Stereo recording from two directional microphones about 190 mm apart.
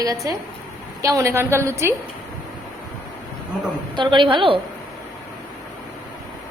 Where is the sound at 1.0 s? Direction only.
15° right (ahead or behind).